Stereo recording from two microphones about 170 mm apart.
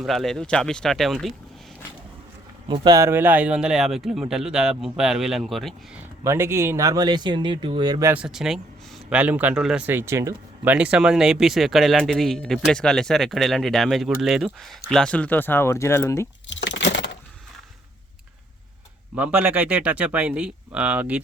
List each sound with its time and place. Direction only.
0.0 s speech: centre (ahead or behind)
2.8 s speech: 20° right (ahead or behind); by 5.7 s centre (ahead or behind)
6.2 s speech: 15° right (ahead or behind)
8.1 s speech: 5° right (ahead or behind); by 16.2 s 15° left (ahead or behind)
16.5 s a sound: 90° left
19.1 s speech: 10° right (ahead or behind)